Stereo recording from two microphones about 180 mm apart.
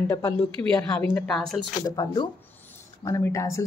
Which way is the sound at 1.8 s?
20° left (ahead or behind).